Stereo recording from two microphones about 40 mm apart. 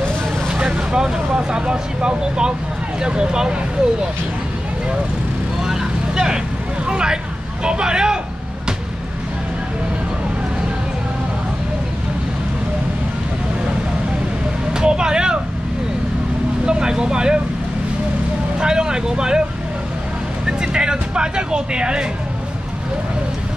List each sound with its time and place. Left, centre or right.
0.5 s vehicle: right
0.7 s speech: centre
5.6 s vehicle: centre
6.9 s speech: right
7.6 s vehicle: right
14.7 s speech: centre
16.6 s speech: right
18.6 s speech: centre
20.4 s vehicle: centre